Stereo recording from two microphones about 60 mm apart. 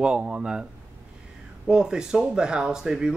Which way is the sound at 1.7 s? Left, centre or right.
Centre.